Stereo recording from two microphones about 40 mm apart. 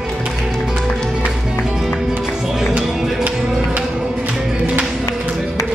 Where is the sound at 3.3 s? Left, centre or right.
Centre.